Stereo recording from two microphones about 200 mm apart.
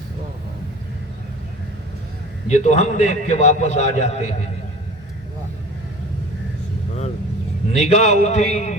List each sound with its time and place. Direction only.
2.5 s a man's voice: 35° left (ahead or behind)
7.7 s a man's voice: 35° left (ahead or behind)